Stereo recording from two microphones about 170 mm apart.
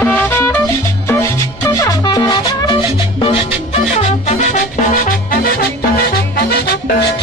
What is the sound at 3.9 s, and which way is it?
Music, 40° left (ahead or behind).